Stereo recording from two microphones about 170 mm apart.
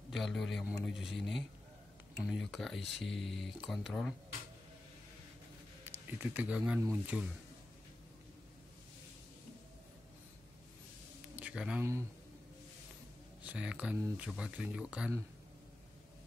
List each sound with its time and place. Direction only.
0.1 s speech: centre (ahead or behind)
5.9 s speech: 10° right (ahead or behind)
11.3 s speech: 5° right (ahead or behind)
13.4 s speech: 5° right (ahead or behind)